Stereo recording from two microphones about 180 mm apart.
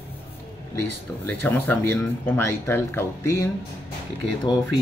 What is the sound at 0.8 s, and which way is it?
Speech, 10° left (ahead or behind).